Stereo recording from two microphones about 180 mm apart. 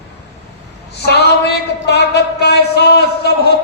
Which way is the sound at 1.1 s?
65° left (ahead or behind).